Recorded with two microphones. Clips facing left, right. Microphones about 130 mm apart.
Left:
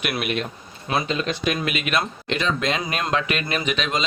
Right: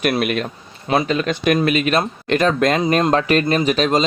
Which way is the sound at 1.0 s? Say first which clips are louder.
Right 6 dB; 55° right (ahead or behind).